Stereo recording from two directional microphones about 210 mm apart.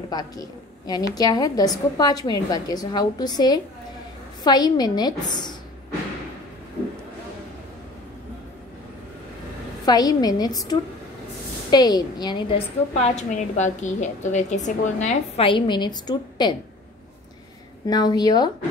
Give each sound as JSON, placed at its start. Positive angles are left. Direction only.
{"t": 0.1, "sound": "a woman's voice", "side_deg": 20}
{"t": 9.8, "sound": "a woman's voice", "side_deg": 20}
{"t": 17.8, "sound": "a woman's voice", "side_deg": 20}